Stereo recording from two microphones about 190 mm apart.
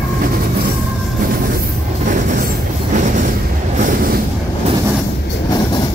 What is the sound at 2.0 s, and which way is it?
Train, 45° right (ahead or behind).